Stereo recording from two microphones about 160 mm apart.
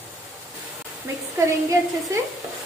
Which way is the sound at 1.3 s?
20° right (ahead or behind).